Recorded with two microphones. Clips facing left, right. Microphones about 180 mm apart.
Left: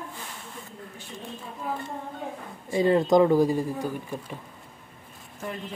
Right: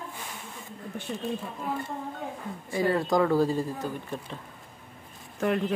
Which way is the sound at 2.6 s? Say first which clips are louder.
Left 5 dB; 20° left (ahead or behind).